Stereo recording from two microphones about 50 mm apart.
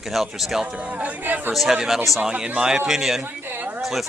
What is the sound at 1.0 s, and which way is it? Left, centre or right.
Speech, right.